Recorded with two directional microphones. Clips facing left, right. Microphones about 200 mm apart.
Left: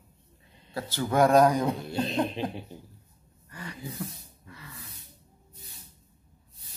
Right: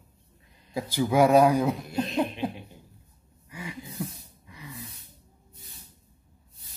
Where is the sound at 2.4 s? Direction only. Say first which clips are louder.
Right 1 dB; 30° left (ahead or behind).